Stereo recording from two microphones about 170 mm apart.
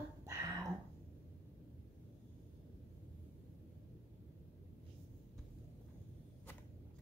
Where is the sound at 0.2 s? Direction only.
15° right (ahead or behind).